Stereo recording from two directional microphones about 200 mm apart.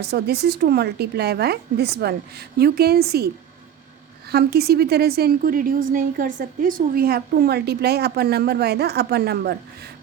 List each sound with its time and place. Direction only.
0.0 s a woman's voice: 55° right (ahead or behind)
4.3 s a woman's voice: 50° right (ahead or behind)